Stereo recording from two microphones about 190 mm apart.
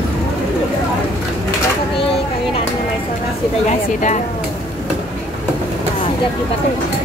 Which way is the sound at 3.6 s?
40° left (ahead or behind).